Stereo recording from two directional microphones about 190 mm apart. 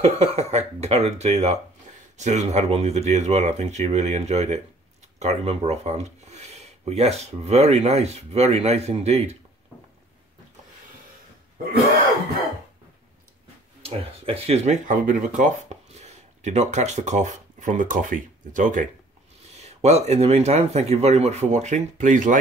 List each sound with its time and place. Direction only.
0.0 s speech: 30° right (ahead or behind)
13.8 s speech: 30° right (ahead or behind)